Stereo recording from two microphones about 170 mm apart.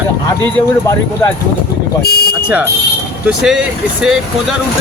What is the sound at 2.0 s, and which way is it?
Speech, 75° left (ahead or behind).